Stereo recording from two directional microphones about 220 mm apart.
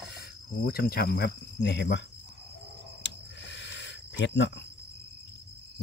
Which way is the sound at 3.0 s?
55° left (ahead or behind).